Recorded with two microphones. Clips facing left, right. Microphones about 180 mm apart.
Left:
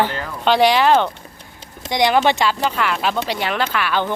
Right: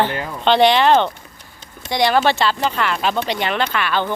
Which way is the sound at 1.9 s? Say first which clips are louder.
Even; 20° left (ahead or behind).